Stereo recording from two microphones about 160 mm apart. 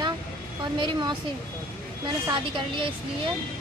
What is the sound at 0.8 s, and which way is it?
Speech, 30° right (ahead or behind).